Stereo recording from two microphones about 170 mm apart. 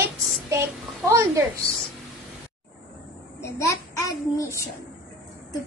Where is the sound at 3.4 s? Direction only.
15° left (ahead or behind).